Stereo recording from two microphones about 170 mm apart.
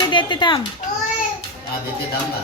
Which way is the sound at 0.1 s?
25° left (ahead or behind).